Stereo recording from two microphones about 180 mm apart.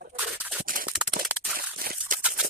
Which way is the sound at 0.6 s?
50° right (ahead or behind).